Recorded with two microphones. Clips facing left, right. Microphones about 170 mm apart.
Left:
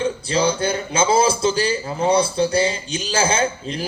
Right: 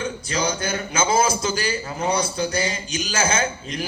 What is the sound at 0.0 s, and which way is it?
A man's voice, 30° left (ahead or behind).